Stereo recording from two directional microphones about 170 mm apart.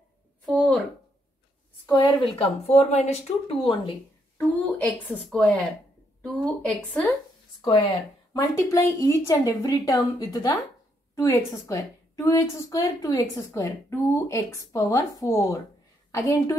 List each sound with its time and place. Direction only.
0.5 s a sound: 5° left (ahead or behind)
1.9 s speech: 25° left (ahead or behind)
4.4 s a woman's voice: 10° left (ahead or behind)
7.6 s a woman's voice: 25° left (ahead or behind)